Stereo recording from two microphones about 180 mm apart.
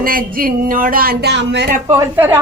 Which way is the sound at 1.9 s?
15° right (ahead or behind).